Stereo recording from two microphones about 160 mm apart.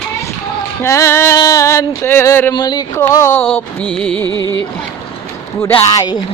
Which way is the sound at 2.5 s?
25° left (ahead or behind).